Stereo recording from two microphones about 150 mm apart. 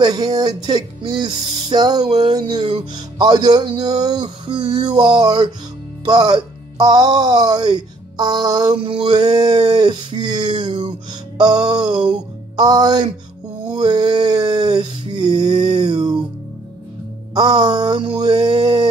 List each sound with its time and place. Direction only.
0.0 s speech: 25° right (ahead or behind)
12.1 s music: 30° right (ahead or behind)
13.7 s a sound: 30° right (ahead or behind)
17.3 s speech: 30° right (ahead or behind)